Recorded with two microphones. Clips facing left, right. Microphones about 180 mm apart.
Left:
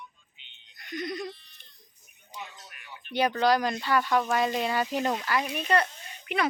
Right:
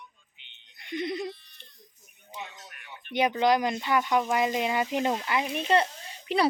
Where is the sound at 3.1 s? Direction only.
20° right (ahead or behind).